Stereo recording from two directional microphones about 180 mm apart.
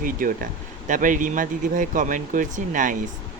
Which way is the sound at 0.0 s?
50° right (ahead or behind).